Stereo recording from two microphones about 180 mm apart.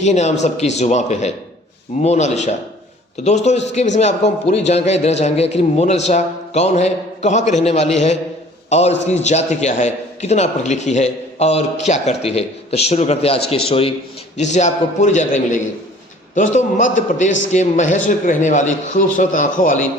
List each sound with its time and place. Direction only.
0.0 s a man's voice: 40° left (ahead or behind)